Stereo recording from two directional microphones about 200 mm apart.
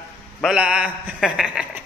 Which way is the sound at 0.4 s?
5° right (ahead or behind).